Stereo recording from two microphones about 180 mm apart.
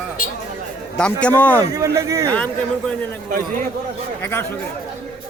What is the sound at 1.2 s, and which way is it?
Speech, 10° left (ahead or behind).